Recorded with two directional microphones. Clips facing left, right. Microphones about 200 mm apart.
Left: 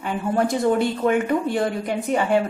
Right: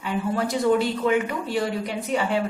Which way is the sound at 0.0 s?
50° left (ahead or behind).